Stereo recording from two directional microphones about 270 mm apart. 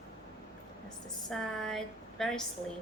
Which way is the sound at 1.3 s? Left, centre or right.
Centre.